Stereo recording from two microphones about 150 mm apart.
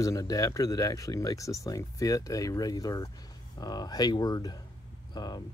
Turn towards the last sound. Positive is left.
turn(degrees=30)  # may be behind; listen again after turning